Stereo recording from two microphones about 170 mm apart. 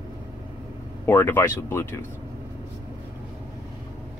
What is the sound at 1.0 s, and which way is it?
Speech, 10° left (ahead or behind).